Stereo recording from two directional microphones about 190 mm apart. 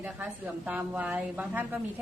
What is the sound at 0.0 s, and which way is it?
A woman's voice, 10° right (ahead or behind).